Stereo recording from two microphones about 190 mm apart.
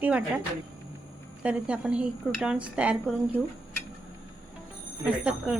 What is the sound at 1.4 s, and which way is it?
A woman's voice, 5° right (ahead or behind).